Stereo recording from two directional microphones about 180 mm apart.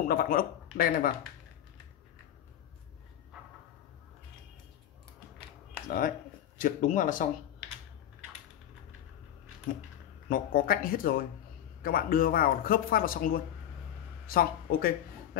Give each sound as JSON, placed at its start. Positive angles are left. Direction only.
{"t": 0.1, "sound": "speech", "side_deg": 55}
{"t": 5.9, "sound": "speech", "side_deg": 50}
{"t": 10.3, "sound": "speech", "side_deg": 50}